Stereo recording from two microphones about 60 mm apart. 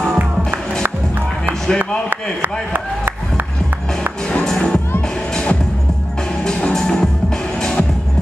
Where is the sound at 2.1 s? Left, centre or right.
Right.